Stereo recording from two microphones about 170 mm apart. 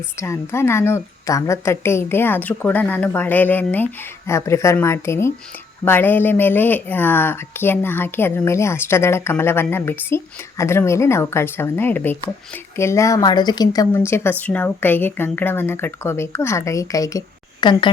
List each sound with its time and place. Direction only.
0.2 s speech: 15° left (ahead or behind)